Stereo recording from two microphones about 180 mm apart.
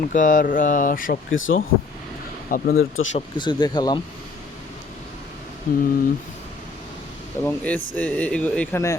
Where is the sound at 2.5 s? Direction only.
55° left (ahead or behind).